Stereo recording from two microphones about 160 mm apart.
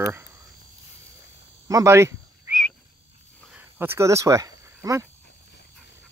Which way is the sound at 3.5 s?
15° right (ahead or behind).